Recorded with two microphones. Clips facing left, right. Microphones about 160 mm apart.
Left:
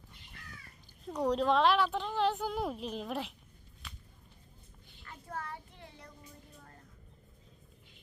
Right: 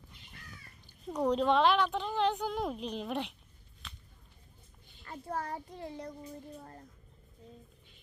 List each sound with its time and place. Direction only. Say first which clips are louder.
1.0 s speech: right 1 dB; centre (ahead or behind)
5.0 s child singing: right 5 dB; 35° right (ahead or behind)
6.6 s a sound: right 7 dB; 35° right (ahead or behind)